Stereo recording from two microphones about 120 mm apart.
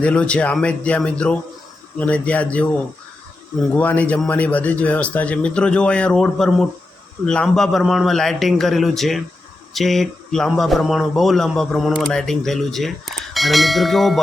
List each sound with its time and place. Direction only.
0.0 s a man's voice: 10° left (ahead or behind)